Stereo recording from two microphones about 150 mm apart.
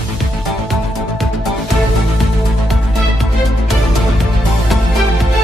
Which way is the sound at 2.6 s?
Centre (ahead or behind).